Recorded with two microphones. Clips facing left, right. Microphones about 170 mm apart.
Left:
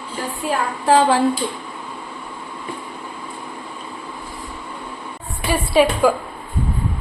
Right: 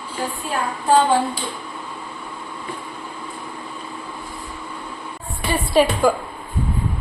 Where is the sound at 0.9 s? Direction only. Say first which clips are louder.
Left 1 dB; 90° left.